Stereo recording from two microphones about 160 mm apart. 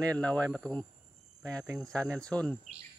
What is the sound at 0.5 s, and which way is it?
Speech, 5° left (ahead or behind).